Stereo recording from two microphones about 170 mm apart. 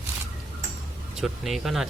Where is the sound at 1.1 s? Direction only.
Centre (ahead or behind).